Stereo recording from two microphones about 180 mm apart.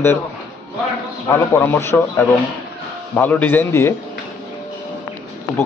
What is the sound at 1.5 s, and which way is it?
A man's voice, 10° left (ahead or behind).